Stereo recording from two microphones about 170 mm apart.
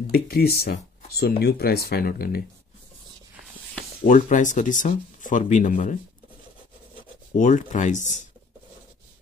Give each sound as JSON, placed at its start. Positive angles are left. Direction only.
{"t": 0.1, "sound": "speech", "side_deg": 65}
{"t": 4.0, "sound": "speech", "side_deg": 50}
{"t": 7.3, "sound": "speech", "side_deg": 45}